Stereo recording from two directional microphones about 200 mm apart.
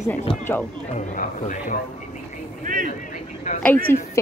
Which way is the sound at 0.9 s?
35° left (ahead or behind).